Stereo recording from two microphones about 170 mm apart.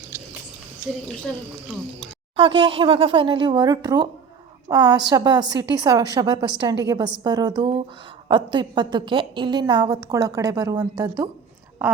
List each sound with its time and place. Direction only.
1.6 s speech: centre (ahead or behind)
2.3 s a woman's voice: 30° right (ahead or behind)